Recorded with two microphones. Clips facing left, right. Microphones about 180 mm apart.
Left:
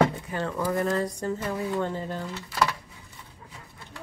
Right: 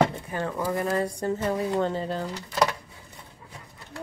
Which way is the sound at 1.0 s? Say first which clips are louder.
Right 2 dB; 25° right (ahead or behind).